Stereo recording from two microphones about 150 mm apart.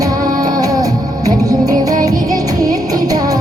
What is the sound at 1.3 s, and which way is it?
Music, 25° right (ahead or behind).